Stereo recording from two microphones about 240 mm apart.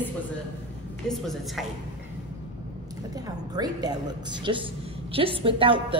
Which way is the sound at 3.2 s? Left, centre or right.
Centre.